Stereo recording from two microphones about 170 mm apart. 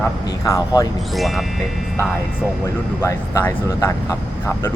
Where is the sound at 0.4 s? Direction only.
20° left (ahead or behind).